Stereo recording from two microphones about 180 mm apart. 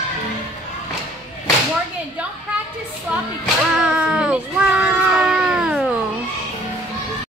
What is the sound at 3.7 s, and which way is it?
A child's voice, 5° right (ahead or behind).